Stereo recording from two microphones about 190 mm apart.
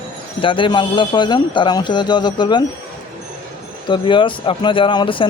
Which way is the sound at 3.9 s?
25° left (ahead or behind).